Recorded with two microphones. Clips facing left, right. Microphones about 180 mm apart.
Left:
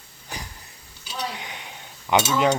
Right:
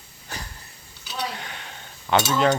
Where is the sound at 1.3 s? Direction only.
15° left (ahead or behind).